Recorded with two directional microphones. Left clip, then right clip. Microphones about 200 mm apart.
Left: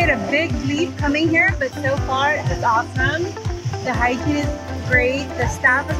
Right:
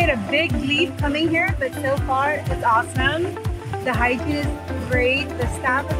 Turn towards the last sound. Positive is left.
turn(degrees=-5)  # may be behind; listen again after turning